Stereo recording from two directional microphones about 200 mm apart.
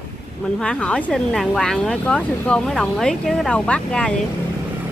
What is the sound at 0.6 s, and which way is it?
Speech, 5° left (ahead or behind).